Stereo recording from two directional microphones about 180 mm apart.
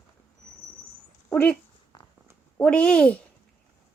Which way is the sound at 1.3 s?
10° left (ahead or behind).